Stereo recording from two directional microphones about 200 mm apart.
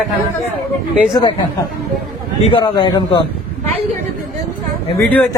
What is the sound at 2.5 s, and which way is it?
Speech, 25° left (ahead or behind).